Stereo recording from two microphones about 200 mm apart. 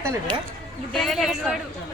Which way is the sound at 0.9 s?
Centre (ahead or behind).